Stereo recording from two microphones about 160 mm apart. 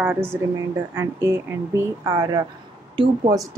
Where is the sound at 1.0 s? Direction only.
15° right (ahead or behind).